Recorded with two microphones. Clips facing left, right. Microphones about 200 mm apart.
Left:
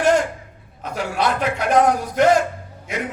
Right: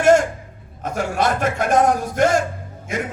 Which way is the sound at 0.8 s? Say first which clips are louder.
Right 2 dB; 50° right (ahead or behind).